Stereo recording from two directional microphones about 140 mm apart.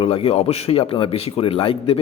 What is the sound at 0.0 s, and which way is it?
A man's voice, 40° left (ahead or behind).